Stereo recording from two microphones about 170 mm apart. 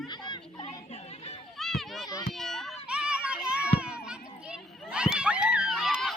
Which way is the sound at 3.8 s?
5° right (ahead or behind).